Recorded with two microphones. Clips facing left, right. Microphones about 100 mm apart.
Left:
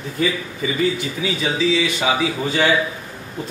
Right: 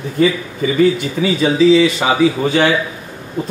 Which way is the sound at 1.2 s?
50° right (ahead or behind).